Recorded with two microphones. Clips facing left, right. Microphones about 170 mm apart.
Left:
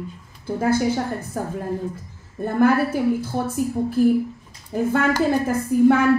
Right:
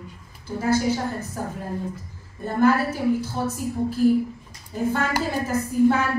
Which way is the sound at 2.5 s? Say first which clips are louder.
Left 2 dB; 55° left (ahead or behind).